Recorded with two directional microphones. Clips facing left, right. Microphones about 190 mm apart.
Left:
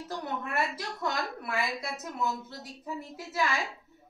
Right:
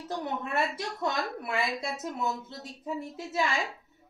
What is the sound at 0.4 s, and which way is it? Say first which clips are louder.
A woman's voice: right 2 dB; 25° right (ahead or behind).